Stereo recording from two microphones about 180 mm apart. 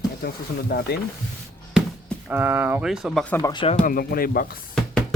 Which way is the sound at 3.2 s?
15° left (ahead or behind).